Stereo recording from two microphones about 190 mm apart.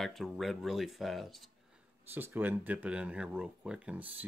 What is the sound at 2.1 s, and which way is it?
Speech, 10° right (ahead or behind).